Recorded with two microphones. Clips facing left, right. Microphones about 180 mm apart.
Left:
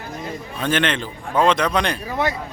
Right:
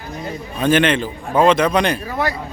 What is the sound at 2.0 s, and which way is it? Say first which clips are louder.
Speech: right 1 dB; 20° left (ahead or behind).